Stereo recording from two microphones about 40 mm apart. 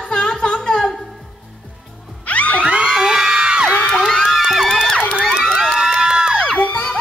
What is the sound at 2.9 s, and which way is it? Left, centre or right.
Whoop, centre.